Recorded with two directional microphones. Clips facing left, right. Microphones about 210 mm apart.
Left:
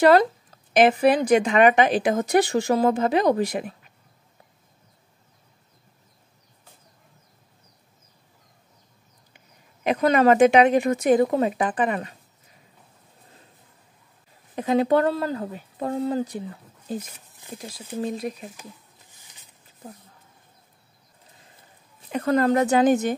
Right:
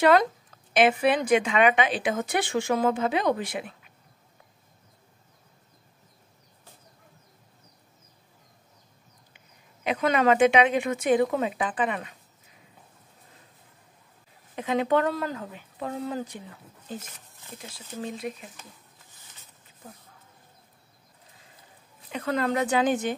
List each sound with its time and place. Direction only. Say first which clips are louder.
0.0 s speech: left 4 dB; 35° left (ahead or behind)
9.8 s speech: left 4 dB; 40° left (ahead or behind)
14.5 s speech: left 4 dB; 40° left (ahead or behind)
19.2 s a sound: right 3 dB; 15° left (ahead or behind)
22.1 s speech: left 6 dB; 45° left (ahead or behind)